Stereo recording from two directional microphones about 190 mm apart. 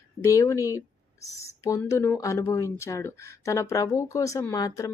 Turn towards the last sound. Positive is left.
turn(degrees=15)  # may be behind; listen again after turning